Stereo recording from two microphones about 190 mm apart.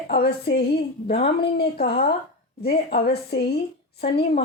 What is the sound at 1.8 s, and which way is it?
A woman's voice, 60° left (ahead or behind).